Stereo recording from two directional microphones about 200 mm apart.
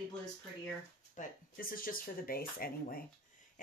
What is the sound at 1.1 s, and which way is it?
Speech, 45° left (ahead or behind).